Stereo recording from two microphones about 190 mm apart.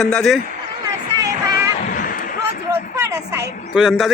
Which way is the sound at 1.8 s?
45° left (ahead or behind).